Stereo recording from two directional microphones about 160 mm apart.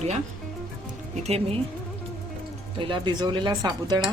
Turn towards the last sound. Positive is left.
turn(degrees=-25)  # may be behind; listen again after turning